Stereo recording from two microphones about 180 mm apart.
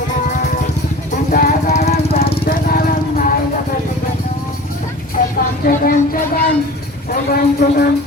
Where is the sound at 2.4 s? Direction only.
55° left (ahead or behind).